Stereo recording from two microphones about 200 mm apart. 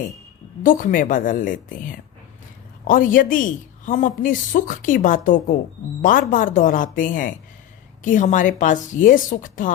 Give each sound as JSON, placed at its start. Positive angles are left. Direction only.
{"t": 0.6, "sound": "a woman's voice", "side_deg": 45}